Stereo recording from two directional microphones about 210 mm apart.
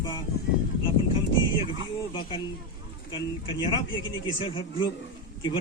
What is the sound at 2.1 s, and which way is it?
Speech, 25° left (ahead or behind).